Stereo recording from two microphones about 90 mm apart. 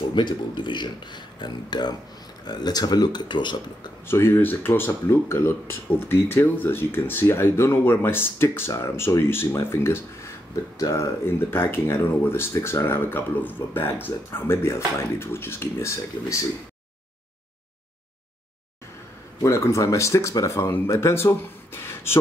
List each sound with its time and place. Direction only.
0.1 s speech: 60° left (ahead or behind)
4.1 s speech: 25° left (ahead or behind)
19.4 s speech: 35° left (ahead or behind)